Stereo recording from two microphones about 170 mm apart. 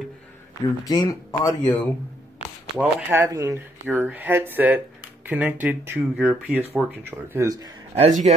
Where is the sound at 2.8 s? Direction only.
15° right (ahead or behind).